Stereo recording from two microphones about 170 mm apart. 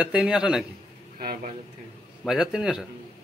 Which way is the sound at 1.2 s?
60° right (ahead or behind).